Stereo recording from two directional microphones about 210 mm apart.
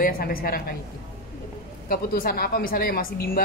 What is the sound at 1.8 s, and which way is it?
Speech, 45° left (ahead or behind).